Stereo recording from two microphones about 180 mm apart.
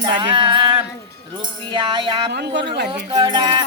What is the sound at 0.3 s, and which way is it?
Music, 25° right (ahead or behind).